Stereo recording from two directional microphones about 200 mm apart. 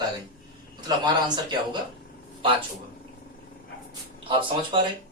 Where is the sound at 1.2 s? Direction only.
20° right (ahead or behind).